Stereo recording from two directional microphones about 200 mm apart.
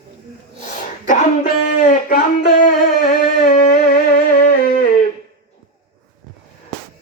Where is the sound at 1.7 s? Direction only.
40° left (ahead or behind).